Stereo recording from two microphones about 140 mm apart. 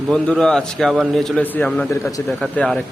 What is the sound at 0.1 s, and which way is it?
A man's voice, 5° left (ahead or behind).